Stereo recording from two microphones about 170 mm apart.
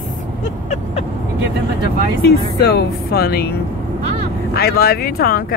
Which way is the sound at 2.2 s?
70° left (ahead or behind).